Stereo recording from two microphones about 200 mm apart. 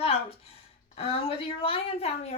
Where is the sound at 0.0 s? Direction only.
30° left (ahead or behind).